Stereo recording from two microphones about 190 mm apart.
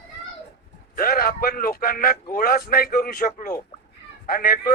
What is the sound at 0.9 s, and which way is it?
A man's voice, 50° left (ahead or behind).